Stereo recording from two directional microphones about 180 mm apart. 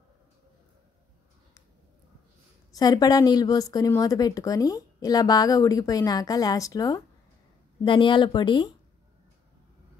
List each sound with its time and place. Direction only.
2.7 s a woman's voice: 20° left (ahead or behind)